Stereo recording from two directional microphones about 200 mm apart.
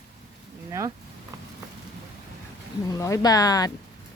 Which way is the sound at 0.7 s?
15° right (ahead or behind).